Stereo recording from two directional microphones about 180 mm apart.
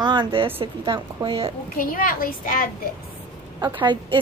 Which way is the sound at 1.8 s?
50° left (ahead or behind).